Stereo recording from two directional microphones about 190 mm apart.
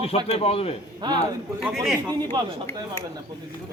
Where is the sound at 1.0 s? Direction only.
25° right (ahead or behind).